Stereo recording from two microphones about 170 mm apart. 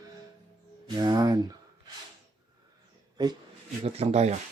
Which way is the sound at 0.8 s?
25° right (ahead or behind).